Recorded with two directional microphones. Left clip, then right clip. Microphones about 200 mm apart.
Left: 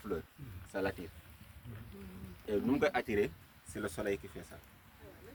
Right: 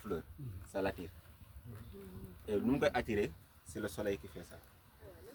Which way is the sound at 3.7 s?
15° right (ahead or behind).